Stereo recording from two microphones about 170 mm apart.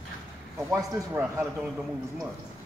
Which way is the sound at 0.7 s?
15° right (ahead or behind).